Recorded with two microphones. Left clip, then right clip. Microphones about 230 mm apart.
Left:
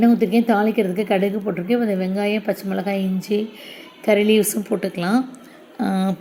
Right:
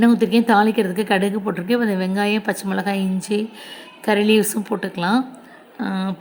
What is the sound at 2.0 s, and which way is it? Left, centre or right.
Speech, right.